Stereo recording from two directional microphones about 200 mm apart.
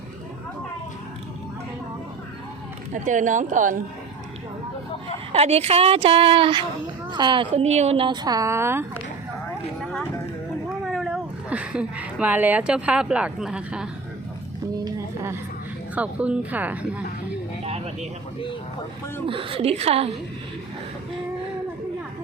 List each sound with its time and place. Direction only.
2.9 s a woman's voice: 40° right (ahead or behind)
5.3 s a woman's voice: 30° right (ahead or behind); by 8.9 s 10° right (ahead or behind)
10.8 s speech: centre (ahead or behind)
14.8 s music: 15° right (ahead or behind)
16.0 s speech: 5° right (ahead or behind)
17.6 s a sound: 30° right (ahead or behind)
19.2 s a woman's voice: 25° right (ahead or behind)